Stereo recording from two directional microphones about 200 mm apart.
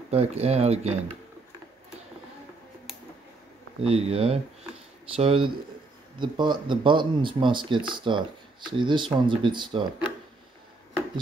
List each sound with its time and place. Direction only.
0.1 s speech: 30° right (ahead or behind)
3.8 s speech: 30° right (ahead or behind)